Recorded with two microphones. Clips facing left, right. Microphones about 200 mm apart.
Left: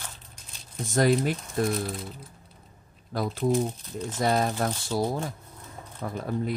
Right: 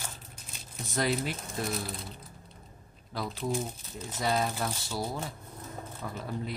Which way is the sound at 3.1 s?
50° left (ahead or behind).